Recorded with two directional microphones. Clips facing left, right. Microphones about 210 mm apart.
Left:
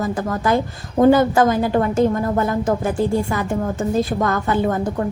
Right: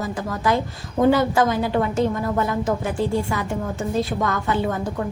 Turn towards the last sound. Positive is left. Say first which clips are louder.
# left 4 dB
turn(degrees=45)  # may be behind; listen again after turning